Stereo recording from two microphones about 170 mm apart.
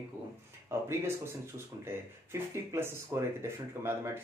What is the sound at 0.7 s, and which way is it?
Speech, 15° right (ahead or behind).